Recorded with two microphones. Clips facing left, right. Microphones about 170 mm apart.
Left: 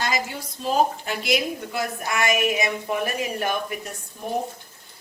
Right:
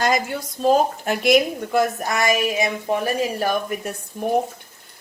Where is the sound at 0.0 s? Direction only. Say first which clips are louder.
Right 6 dB; 50° right (ahead or behind).